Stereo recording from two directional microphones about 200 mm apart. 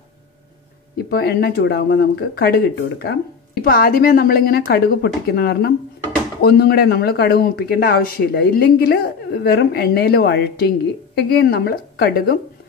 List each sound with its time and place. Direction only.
0.9 s speech: 55° left (ahead or behind)